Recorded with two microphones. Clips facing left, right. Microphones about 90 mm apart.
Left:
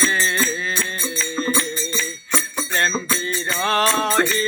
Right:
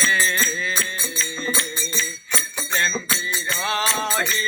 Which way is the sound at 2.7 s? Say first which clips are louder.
Left 2 dB; 45° left (ahead or behind).